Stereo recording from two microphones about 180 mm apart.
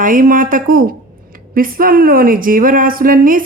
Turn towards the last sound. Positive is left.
turn(degrees=-50)  # may be behind; listen again after turning